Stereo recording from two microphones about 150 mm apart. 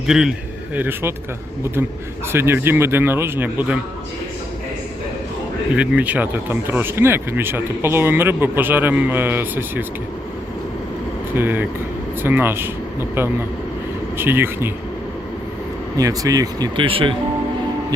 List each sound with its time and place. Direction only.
0.1 s a man's voice: 5° right (ahead or behind)
2.2 s speech: 15° right (ahead or behind)
5.7 s speech: 10° right (ahead or behind)
11.3 s speech: 15° right (ahead or behind)
16.0 s speech: 25° right (ahead or behind)